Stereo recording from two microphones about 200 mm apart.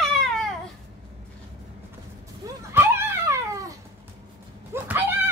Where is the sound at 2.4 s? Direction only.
15° right (ahead or behind).